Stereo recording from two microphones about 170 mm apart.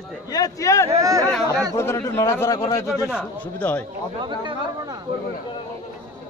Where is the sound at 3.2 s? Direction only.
10° left (ahead or behind).